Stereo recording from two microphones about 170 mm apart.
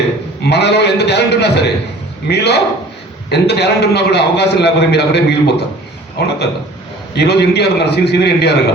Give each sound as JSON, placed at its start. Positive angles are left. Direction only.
{"t": 0.4, "sound": "a man's voice", "side_deg": 75}